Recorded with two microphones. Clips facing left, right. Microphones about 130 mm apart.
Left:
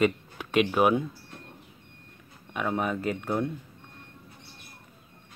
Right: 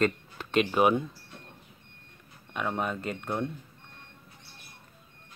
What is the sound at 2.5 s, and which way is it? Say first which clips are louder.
Speech: left 2 dB; 5° left (ahead or behind).